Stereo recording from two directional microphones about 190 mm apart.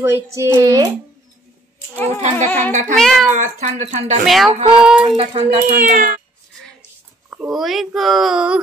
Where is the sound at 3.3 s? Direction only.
40° right (ahead or behind).